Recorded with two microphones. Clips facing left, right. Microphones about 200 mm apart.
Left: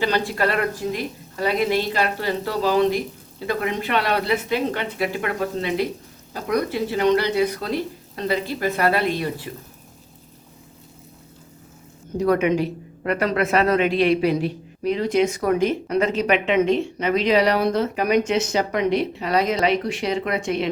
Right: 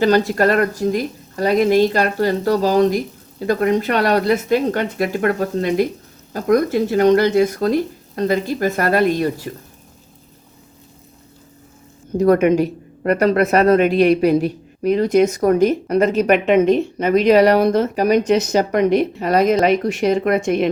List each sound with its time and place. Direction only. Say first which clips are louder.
0.0 s speech: right 7 dB; 45° right (ahead or behind)
12.1 s speech: right 6 dB; 45° right (ahead or behind)